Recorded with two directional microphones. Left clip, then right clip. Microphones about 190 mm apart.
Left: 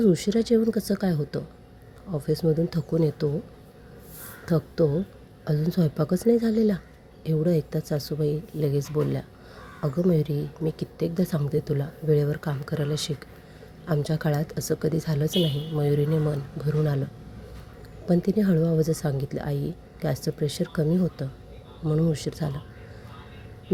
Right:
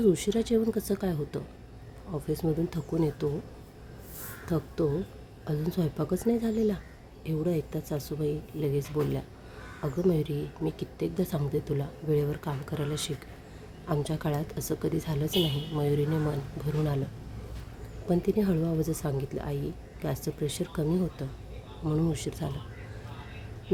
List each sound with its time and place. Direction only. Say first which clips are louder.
0.0 s speech: left 3 dB; 20° left (ahead or behind)
4.4 s a woman's voice: left 6 dB; 25° left (ahead or behind)
18.1 s speech: left 3 dB; 20° left (ahead or behind)